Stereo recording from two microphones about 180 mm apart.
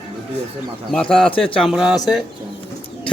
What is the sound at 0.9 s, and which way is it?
A man's voice, centre (ahead or behind).